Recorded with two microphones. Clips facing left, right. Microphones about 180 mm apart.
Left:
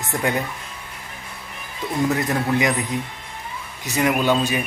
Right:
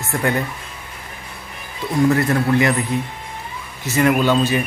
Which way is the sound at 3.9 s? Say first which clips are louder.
Right 3 dB; 10° left (ahead or behind).